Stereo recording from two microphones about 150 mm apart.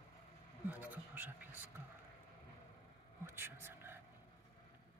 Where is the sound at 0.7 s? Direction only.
10° right (ahead or behind).